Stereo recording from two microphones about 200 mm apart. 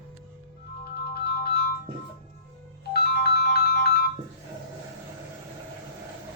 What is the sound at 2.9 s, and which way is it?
Ringtone, 55° left (ahead or behind).